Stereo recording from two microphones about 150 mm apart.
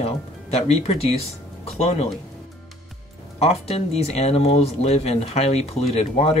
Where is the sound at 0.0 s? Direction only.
45° left (ahead or behind).